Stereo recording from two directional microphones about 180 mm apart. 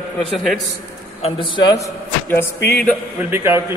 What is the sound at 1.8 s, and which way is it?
Music, 15° left (ahead or behind).